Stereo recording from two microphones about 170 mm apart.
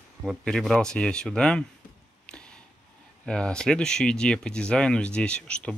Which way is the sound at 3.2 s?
5° left (ahead or behind).